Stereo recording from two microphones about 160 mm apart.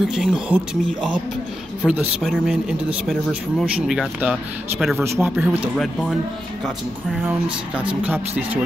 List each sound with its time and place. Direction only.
0.0 s speech: centre (ahead or behind)
1.9 s speech: 5° right (ahead or behind)
5.0 s speech: 15° right (ahead or behind)
5.3 s speech: 5° right (ahead or behind)